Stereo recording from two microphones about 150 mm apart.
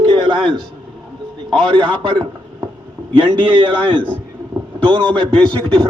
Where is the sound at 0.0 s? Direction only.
30° right (ahead or behind).